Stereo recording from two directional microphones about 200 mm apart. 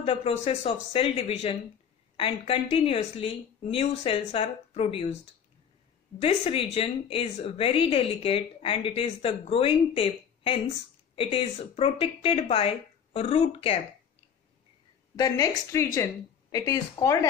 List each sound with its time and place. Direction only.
0.0 s speech: 30° left (ahead or behind)
6.1 s speech: 30° left (ahead or behind)
15.1 s a woman's voice: 20° left (ahead or behind)